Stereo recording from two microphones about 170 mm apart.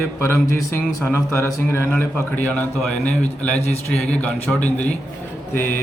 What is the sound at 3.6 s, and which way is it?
Speech, 40° left (ahead or behind).